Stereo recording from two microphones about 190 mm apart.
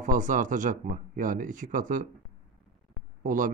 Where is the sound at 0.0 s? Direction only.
45° right (ahead or behind).